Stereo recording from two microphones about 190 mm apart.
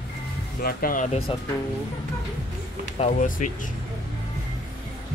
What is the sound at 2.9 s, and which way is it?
Speech, 35° left (ahead or behind).